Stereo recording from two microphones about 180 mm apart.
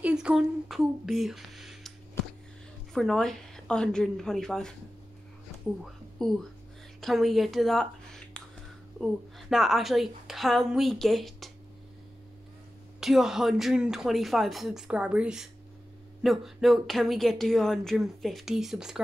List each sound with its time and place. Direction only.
0.0 s speech: 5° right (ahead or behind)
2.9 s speech: centre (ahead or behind)
6.2 s speech: centre (ahead or behind)
13.0 s speech: centre (ahead or behind)